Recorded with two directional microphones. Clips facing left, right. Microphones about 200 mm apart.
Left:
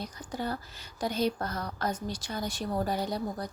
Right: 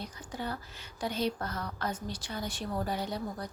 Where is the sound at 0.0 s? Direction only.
40° left (ahead or behind).